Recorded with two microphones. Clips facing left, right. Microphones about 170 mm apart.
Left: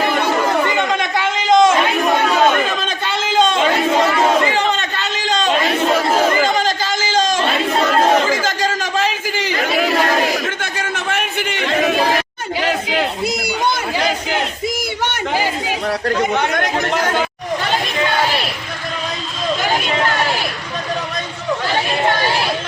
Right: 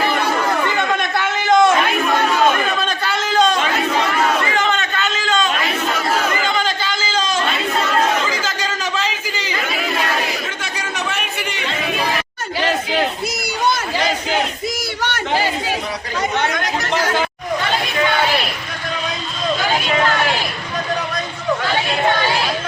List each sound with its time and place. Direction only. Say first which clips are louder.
0.0 s chatter: left 2 dB; 15° left (ahead or behind)
4.2 s crowd: left 3 dB; 30° left (ahead or behind)
8.0 s chatter: left 5 dB; 40° left (ahead or behind)
12.5 s crowd: even; 10° left (ahead or behind)
15.0 s a sound: even; 15° left (ahead or behind)
16.0 s chatter: left 3 dB; 55° left (ahead or behind)